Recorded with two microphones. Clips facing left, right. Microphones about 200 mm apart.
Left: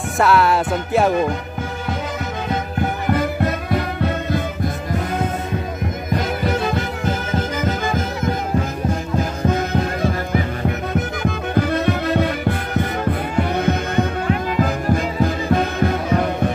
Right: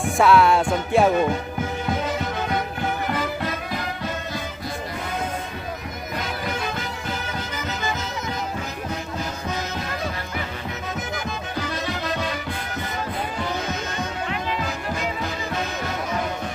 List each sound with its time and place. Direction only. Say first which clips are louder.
0.2 s music: left 1 dB; centre (ahead or behind)
3.7 s music: left 8 dB; 60° left (ahead or behind)
7.1 s music: left 8 dB; 45° left (ahead or behind)
9.5 s music: left 11 dB; 55° left (ahead or behind)
10.9 s music: left 7 dB; 60° left (ahead or behind)